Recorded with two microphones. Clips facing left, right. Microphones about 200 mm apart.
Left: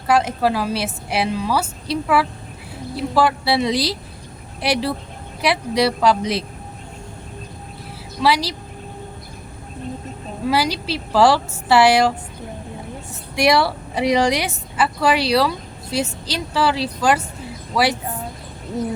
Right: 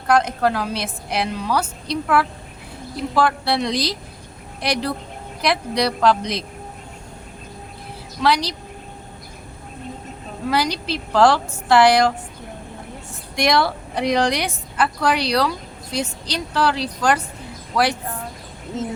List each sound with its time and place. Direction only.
0.1 s a woman's voice: 5° left (ahead or behind)
8.2 s a woman's voice: 5° left (ahead or behind)
10.5 s a woman's voice: 5° left (ahead or behind)
13.3 s a woman's voice: 5° left (ahead or behind)
18.7 s speech: 25° right (ahead or behind)